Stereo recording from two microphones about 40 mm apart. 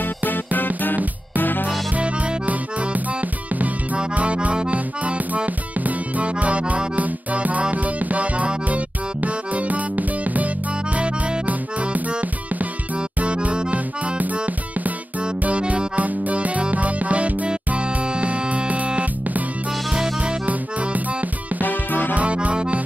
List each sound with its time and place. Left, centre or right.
0.0 s music: left
2.0 s music: right
11.0 s music: right
16.0 s music: right
20.4 s music: right
21.6 s music: left
22.1 s music: right